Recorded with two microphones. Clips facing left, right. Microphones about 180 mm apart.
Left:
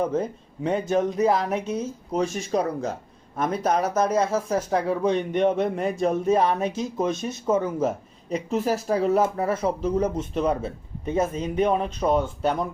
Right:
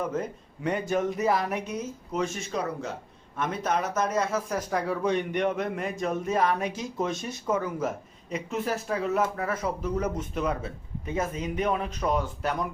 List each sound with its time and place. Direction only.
0.1 s speech: 25° left (ahead or behind)